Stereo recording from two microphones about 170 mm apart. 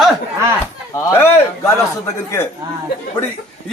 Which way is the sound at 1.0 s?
15° left (ahead or behind).